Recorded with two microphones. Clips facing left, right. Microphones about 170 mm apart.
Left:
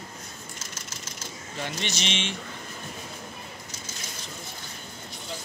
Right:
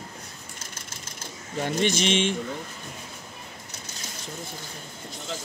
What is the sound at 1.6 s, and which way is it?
Speech, 50° right (ahead or behind).